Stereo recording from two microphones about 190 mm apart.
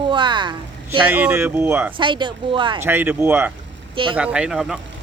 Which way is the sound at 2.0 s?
25° right (ahead or behind).